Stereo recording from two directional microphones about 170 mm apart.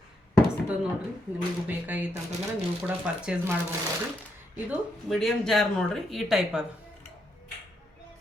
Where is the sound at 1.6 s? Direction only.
10° right (ahead or behind).